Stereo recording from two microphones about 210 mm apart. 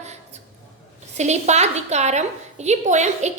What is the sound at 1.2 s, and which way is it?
A woman's voice, 30° right (ahead or behind).